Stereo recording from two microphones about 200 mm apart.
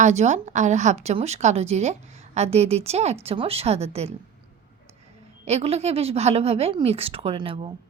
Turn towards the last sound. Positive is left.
turn(degrees=-25)  # may be behind; listen again after turning